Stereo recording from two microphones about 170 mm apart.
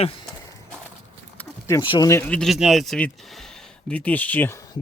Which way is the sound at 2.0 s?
10° left (ahead or behind).